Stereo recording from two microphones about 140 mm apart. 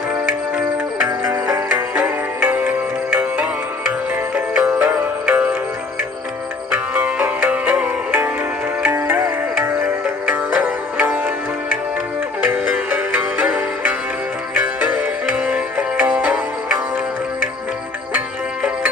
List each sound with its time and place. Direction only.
1.0 s music: 25° right (ahead or behind)
2.0 s music: 10° right (ahead or behind)
6.7 s music: 10° right (ahead or behind)
12.4 s music: 5° right (ahead or behind)